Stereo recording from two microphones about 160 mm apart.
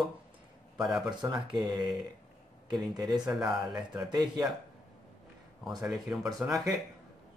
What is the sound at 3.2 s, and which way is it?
Speech, 5° right (ahead or behind).